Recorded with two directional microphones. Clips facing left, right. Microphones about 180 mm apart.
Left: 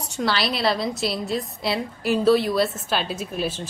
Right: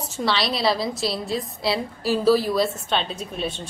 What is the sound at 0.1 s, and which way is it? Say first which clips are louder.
A woman's voice: even; centre (ahead or behind).